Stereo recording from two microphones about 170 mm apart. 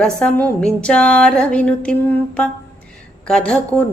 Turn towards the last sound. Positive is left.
turn(degrees=5)  # may be behind; listen again after turning